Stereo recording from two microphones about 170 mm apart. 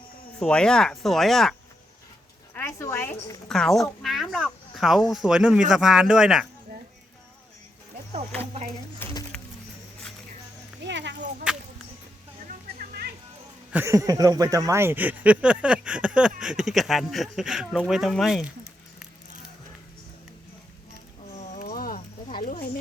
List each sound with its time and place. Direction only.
0.3 s speech: 5° left (ahead or behind)
2.6 s a woman's voice: 15° left (ahead or behind)
3.5 s speech: centre (ahead or behind)
9.0 s a woman's voice: 15° left (ahead or behind)
10.8 s a sound: 90° right
11.5 s whip: 5° right (ahead or behind)
12.5 s music: 65° right (ahead or behind)
13.7 s speech: 15° right (ahead or behind); by 18.5 s centre (ahead or behind)
21.3 s a sound: 45° left (ahead or behind)